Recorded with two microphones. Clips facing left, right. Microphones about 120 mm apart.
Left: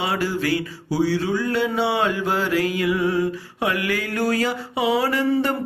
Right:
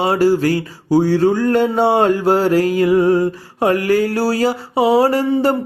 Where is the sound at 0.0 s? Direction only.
40° right (ahead or behind).